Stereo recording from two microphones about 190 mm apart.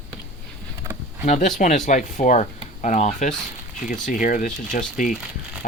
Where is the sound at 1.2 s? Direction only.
40° left (ahead or behind).